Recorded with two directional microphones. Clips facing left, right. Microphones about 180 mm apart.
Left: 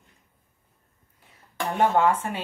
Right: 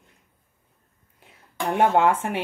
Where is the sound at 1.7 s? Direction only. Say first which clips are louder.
Right 2 dB; 65° right (ahead or behind).